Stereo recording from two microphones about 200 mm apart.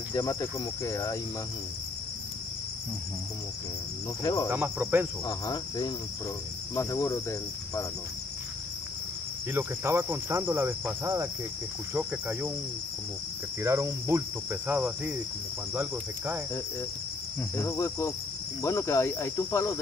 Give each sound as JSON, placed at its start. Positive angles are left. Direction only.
{"t": 0.1, "sound": "cricket", "side_deg": 20}
{"t": 4.2, "sound": "cricket", "side_deg": 20}
{"t": 4.5, "sound": "cricket", "side_deg": -10}
{"t": 5.2, "sound": "cricket", "side_deg": 20}
{"t": 9.5, "sound": "cricket", "side_deg": -10}
{"t": 13.6, "sound": "cricket", "side_deg": -15}
{"t": 17.6, "sound": "cricket", "side_deg": 15}